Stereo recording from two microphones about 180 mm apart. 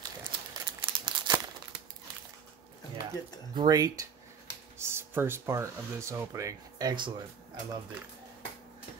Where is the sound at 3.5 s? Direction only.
20° right (ahead or behind).